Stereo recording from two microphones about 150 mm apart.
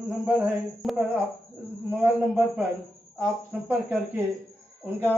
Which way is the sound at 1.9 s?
10° right (ahead or behind).